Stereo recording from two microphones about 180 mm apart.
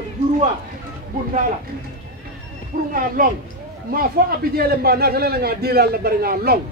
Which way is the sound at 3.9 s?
55° right (ahead or behind).